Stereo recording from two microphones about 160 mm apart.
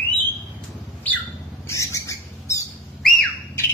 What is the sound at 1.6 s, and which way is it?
Squawk, 20° left (ahead or behind).